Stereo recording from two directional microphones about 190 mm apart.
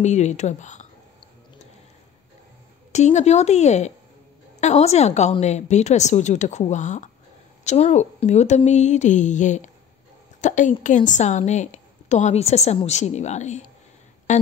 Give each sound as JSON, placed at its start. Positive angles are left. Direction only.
{"t": 0.0, "sound": "a woman's voice", "side_deg": 40}
{"t": 2.9, "sound": "a woman's voice", "side_deg": 35}